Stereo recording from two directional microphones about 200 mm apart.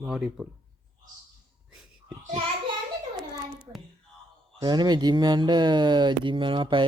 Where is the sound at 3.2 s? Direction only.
Centre (ahead or behind).